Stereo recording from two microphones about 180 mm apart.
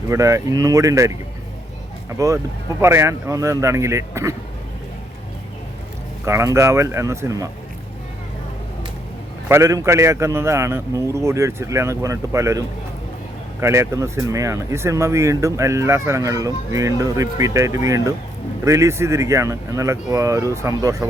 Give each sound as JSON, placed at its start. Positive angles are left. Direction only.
{"t": 0.1, "sound": "a man's voice", "side_deg": -15}
{"t": 6.2, "sound": "a man's voice", "side_deg": -15}
{"t": 9.5, "sound": "a man's voice", "side_deg": -15}